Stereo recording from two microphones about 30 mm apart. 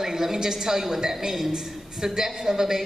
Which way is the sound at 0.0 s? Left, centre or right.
Centre.